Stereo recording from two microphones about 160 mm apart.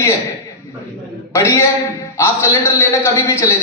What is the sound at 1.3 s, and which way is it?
A man's voice, 20° left (ahead or behind).